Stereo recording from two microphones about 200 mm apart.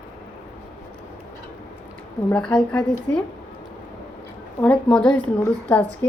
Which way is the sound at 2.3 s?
5° left (ahead or behind).